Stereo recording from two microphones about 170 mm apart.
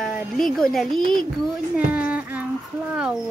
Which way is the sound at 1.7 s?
10° right (ahead or behind).